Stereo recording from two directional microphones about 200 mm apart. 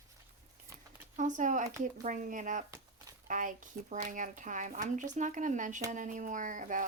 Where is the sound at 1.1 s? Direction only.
40° right (ahead or behind).